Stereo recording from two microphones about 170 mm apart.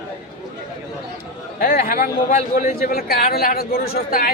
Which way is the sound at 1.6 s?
60° left (ahead or behind).